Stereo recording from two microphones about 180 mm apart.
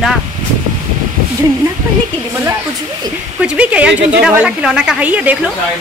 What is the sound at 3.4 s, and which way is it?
A woman's voice, 5° right (ahead or behind).